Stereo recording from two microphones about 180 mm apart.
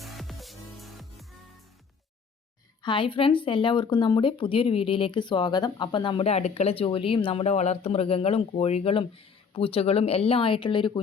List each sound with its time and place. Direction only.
0.0 s music: centre (ahead or behind)
2.8 s speech: 25° left (ahead or behind)